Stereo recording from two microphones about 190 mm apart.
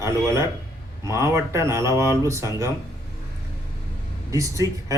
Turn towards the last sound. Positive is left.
turn(degrees=-15)  # may be behind; listen again after turning